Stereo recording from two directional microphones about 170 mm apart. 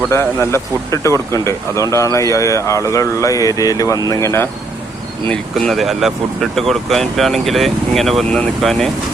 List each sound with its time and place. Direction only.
0.1 s speech: 15° left (ahead or behind)
5.3 s speech: centre (ahead or behind)